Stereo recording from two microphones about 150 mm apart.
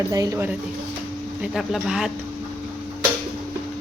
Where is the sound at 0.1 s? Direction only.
25° right (ahead or behind).